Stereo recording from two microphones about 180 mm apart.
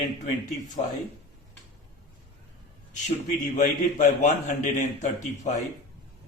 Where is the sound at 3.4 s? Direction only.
45° left (ahead or behind).